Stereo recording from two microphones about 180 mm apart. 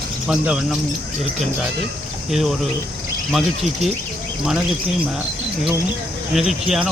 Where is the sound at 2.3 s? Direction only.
Centre (ahead or behind).